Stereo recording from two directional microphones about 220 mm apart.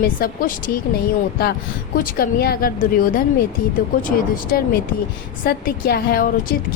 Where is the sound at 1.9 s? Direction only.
40° left (ahead or behind).